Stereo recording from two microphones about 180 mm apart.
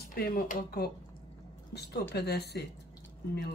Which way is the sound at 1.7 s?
65° left (ahead or behind).